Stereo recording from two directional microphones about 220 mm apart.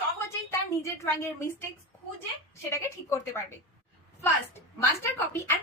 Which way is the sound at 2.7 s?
15° left (ahead or behind).